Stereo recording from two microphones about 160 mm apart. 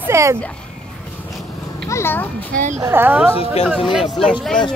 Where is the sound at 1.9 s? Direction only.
15° left (ahead or behind).